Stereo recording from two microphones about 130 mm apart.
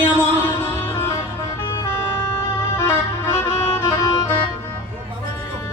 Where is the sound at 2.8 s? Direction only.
20° left (ahead or behind).